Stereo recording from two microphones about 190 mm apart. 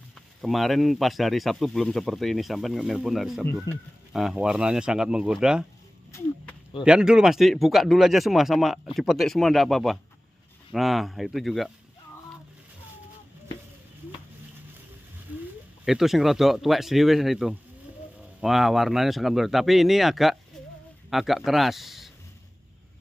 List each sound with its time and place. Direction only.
0.1 s speech: centre (ahead or behind)
3.7 s speech: 20° left (ahead or behind)
4.1 s speech: centre (ahead or behind)
6.8 s speech: 5° right (ahead or behind)
15.8 s speech: centre (ahead or behind)